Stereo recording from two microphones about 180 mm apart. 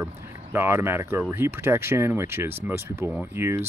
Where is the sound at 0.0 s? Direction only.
15° right (ahead or behind).